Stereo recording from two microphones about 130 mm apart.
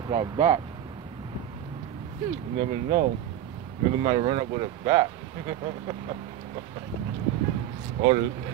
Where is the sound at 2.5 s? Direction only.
60° right (ahead or behind).